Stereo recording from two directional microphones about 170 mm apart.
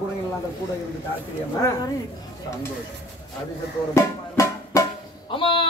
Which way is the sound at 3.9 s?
20° left (ahead or behind).